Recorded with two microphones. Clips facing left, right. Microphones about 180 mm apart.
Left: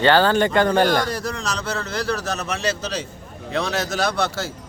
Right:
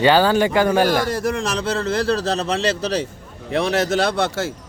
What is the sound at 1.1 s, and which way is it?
A man's voice, 25° right (ahead or behind).